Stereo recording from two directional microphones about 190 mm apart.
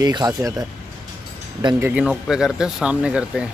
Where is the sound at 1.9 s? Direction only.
5° right (ahead or behind).